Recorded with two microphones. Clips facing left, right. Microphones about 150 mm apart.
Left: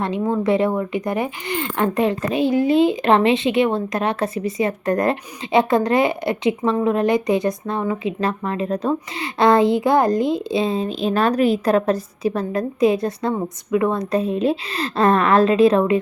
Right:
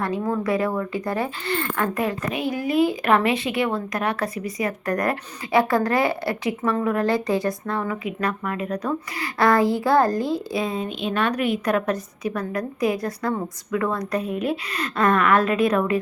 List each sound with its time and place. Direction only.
0.0 s speech: 25° left (ahead or behind)